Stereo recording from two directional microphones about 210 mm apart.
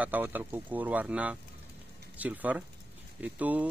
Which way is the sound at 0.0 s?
10° right (ahead or behind).